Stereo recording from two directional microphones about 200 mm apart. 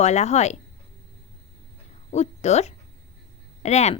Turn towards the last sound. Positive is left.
turn(degrees=35)  # may be behind; listen again after turning